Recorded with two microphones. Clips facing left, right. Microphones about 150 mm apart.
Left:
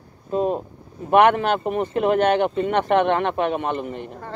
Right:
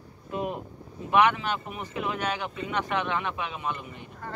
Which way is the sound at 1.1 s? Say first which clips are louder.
Left 7 dB; 55° left (ahead or behind).